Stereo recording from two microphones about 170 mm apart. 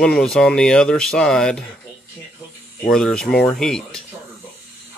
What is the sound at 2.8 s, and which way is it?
Speech, 5° left (ahead or behind).